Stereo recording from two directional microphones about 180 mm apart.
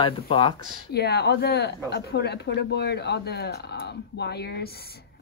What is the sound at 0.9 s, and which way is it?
Speech, 65° left (ahead or behind).